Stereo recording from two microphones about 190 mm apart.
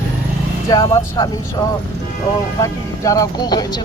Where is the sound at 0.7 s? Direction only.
20° left (ahead or behind).